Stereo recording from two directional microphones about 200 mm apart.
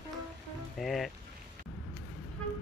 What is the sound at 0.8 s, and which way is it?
Music, centre (ahead or behind).